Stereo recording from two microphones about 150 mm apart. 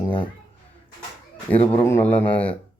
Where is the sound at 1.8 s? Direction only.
15° left (ahead or behind).